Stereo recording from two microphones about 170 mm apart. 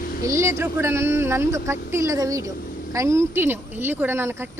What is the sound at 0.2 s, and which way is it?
Speech, 15° right (ahead or behind).